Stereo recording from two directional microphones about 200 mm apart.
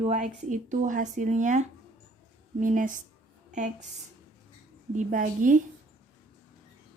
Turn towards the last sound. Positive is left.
turn(degrees=-40)  # may be behind; listen again after turning